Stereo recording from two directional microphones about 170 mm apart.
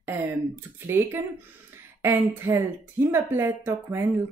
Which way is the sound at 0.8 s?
15° right (ahead or behind).